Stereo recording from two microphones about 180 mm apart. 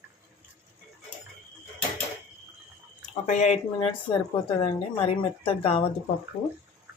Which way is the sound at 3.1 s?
40° left (ahead or behind).